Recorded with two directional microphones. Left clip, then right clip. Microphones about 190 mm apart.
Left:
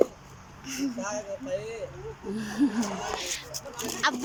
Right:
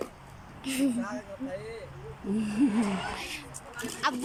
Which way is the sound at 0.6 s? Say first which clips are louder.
Right 4 dB; 25° right (ahead or behind).